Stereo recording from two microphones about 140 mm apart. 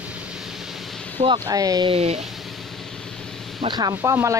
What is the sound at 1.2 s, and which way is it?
Speech, 30° right (ahead or behind).